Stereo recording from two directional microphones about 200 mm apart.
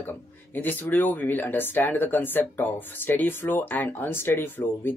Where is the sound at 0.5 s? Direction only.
10° left (ahead or behind).